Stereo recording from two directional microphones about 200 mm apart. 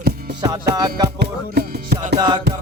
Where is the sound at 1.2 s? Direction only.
50° right (ahead or behind).